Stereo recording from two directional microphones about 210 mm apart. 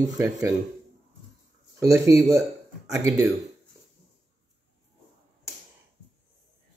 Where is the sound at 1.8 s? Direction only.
15° right (ahead or behind).